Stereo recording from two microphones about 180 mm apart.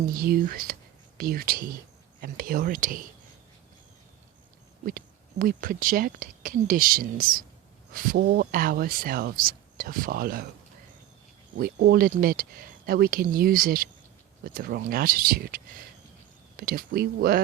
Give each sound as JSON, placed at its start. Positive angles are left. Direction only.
{"t": 0.0, "sound": "speech", "side_deg": -55}
{"t": 4.9, "sound": "speech", "side_deg": -55}
{"t": 11.5, "sound": "speech", "side_deg": -60}